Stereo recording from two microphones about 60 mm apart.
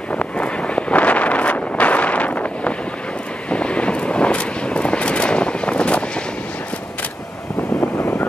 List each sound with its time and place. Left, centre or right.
0.1 s wind noise: left
3.4 s vehicle: centre